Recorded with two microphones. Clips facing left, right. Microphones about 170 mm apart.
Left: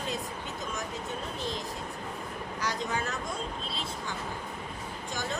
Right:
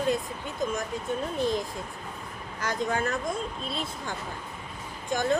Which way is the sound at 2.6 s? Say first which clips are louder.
Right 5 dB; 55° right (ahead or behind).